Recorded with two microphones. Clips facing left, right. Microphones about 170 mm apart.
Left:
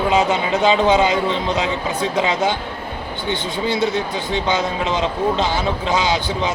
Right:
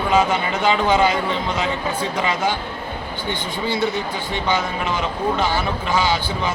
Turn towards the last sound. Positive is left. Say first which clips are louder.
# left 2 dB
turn(degrees=20)  # may be behind; listen again after turning